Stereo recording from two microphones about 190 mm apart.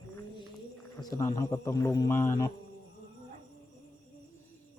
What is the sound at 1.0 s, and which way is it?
A man's voice, 20° left (ahead or behind).